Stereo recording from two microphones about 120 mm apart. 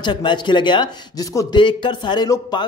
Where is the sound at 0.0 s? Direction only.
40° left (ahead or behind).